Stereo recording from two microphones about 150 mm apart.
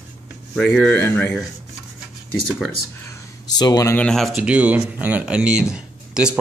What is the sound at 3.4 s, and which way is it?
Speech, 25° left (ahead or behind).